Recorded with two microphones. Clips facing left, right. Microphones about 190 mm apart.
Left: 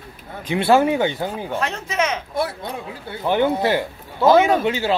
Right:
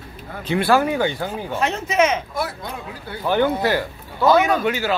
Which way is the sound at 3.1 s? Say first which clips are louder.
Even; 20° left (ahead or behind).